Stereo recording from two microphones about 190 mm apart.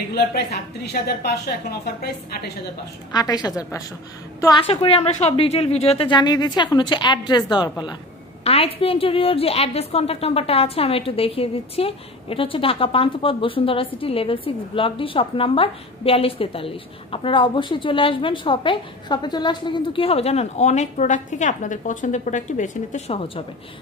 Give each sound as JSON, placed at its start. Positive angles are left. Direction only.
{"t": 0.1, "sound": "a woman's voice", "side_deg": 55}
{"t": 3.1, "sound": "a woman's voice", "side_deg": 20}